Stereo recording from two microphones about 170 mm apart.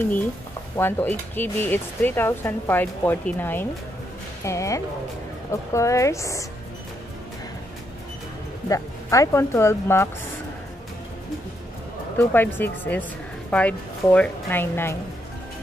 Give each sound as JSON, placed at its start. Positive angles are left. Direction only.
{"t": 0.7, "sound": "speech", "side_deg": 15}
{"t": 8.6, "sound": "speech", "side_deg": 20}
{"t": 12.2, "sound": "speech", "side_deg": 10}